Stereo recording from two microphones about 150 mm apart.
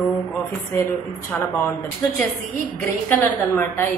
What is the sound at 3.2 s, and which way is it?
Speech, 15° left (ahead or behind).